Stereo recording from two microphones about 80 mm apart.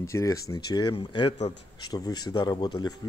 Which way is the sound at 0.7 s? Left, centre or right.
Left.